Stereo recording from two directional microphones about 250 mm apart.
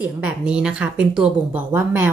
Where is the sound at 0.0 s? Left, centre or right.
Centre.